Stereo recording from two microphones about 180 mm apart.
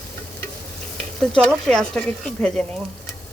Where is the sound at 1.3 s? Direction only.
5° left (ahead or behind).